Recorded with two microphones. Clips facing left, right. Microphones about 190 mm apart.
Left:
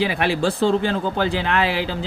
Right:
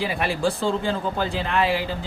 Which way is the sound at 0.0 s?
75° left (ahead or behind).